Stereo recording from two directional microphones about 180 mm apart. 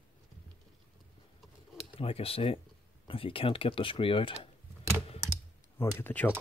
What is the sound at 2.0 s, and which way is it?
Speech, 30° left (ahead or behind).